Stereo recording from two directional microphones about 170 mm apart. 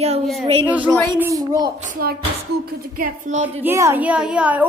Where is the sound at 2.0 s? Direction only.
60° right (ahead or behind).